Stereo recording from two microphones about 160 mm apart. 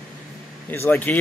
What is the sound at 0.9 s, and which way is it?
Speech, 10° left (ahead or behind).